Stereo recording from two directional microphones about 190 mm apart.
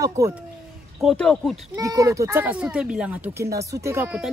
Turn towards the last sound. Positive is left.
turn(degrees=-10)  # may be behind; listen again after turning